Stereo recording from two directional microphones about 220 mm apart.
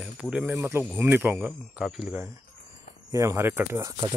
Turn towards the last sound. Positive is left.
turn(degrees=-15)  # may be behind; listen again after turning